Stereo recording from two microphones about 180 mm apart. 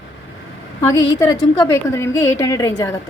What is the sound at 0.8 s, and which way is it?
A woman's voice, 15° left (ahead or behind).